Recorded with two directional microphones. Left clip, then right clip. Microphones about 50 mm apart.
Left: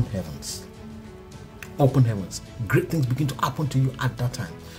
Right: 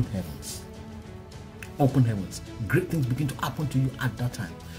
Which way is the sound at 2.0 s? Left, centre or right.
Left.